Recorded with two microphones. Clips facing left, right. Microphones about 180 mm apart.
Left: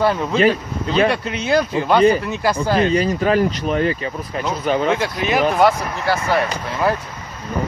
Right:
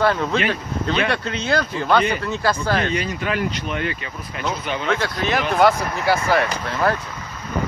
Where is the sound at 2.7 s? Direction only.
35° left (ahead or behind).